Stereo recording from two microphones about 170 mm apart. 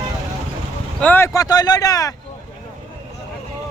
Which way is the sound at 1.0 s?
15° left (ahead or behind).